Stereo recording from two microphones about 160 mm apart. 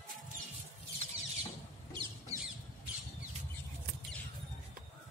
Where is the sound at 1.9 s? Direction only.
25° right (ahead or behind).